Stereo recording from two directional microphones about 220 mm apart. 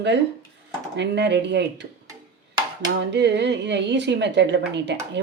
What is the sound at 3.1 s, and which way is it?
A woman's voice, 50° right (ahead or behind).